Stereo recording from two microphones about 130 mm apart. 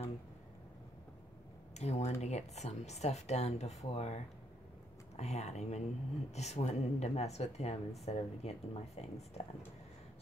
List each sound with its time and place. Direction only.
1.8 s a woman's voice: 55° left (ahead or behind)